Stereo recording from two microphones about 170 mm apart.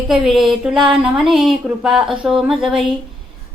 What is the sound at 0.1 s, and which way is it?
Speech, centre (ahead or behind).